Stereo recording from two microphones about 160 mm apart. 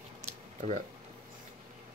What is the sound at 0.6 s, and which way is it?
Speech, 55° right (ahead or behind).